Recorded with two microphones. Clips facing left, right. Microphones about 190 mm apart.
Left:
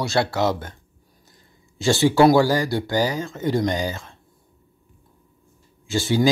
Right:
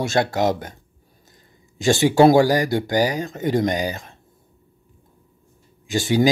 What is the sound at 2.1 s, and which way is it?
Speech, 45° right (ahead or behind).